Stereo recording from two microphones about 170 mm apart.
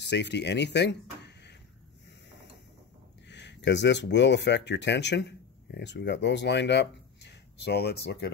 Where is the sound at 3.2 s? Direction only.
90° left; by 8.2 s 75° left (ahead or behind).